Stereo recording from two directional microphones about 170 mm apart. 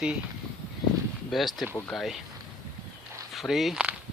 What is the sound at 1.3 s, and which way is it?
Speech, centre (ahead or behind).